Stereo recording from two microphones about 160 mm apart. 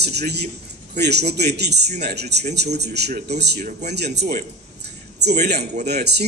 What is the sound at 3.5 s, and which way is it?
Speech, 50° right (ahead or behind).